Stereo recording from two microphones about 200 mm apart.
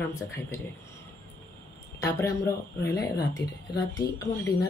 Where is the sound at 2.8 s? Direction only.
55° left (ahead or behind).